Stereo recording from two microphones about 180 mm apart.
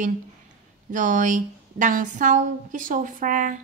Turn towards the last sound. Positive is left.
turn(degrees=-45)  # may be behind; listen again after turning